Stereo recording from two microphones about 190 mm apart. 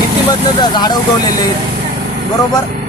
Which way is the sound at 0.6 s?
20° left (ahead or behind).